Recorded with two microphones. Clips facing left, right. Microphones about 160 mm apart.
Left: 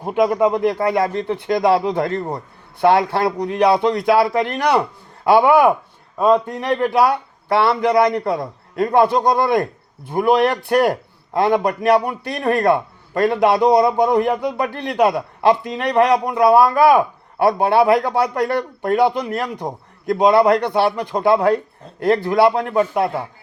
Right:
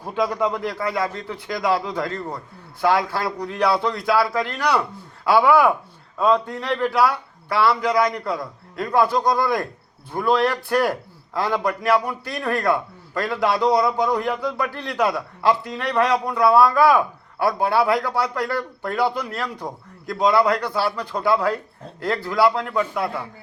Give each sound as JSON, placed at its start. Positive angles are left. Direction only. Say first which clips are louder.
{"t": 0.0, "sound": "a man's voice", "louder": "left 6 dB", "side_deg": 20}